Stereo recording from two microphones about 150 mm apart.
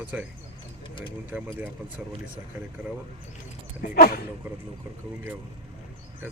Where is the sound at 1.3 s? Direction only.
10° right (ahead or behind).